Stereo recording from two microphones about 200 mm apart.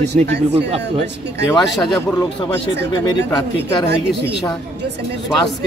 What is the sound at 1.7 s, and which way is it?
Speech, centre (ahead or behind).